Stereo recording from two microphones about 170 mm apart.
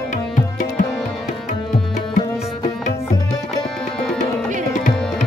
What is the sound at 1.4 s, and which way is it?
Tabla, 45° left (ahead or behind).